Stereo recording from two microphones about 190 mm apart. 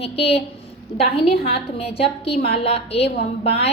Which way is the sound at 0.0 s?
30° left (ahead or behind).